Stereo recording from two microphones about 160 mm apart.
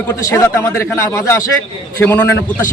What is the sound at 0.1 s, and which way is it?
A man's voice, 20° left (ahead or behind).